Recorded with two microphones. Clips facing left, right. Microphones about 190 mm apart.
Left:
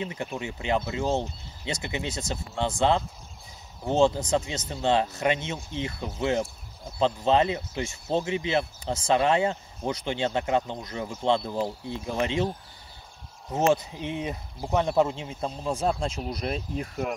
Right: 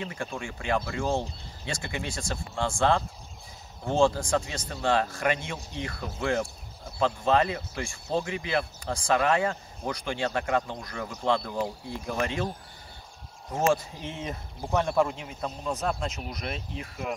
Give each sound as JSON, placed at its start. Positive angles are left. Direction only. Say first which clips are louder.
{"t": 0.0, "sound": "speech", "louder": "left 2 dB", "side_deg": 20}
{"t": 13.5, "sound": "speech", "louder": "left 2 dB", "side_deg": 20}